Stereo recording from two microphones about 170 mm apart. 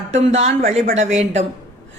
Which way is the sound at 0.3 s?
40° right (ahead or behind).